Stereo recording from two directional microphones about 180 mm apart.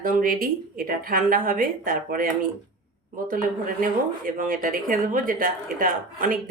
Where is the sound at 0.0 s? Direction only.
50° right (ahead or behind).